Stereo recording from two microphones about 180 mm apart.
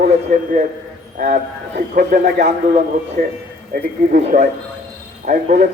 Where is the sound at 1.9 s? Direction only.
60° right (ahead or behind).